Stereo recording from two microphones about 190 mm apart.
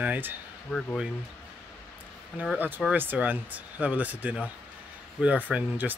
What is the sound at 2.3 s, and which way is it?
Speech, 10° right (ahead or behind).